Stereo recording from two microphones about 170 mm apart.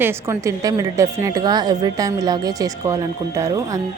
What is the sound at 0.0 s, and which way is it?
A woman's voice, 15° right (ahead or behind).